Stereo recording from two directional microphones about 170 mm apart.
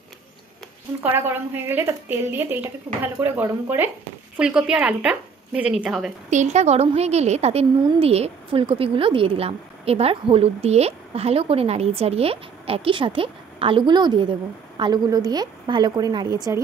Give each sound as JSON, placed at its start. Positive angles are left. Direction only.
{"t": 1.0, "sound": "a woman's voice", "side_deg": -10}
{"t": 6.3, "sound": "a woman's voice", "side_deg": -40}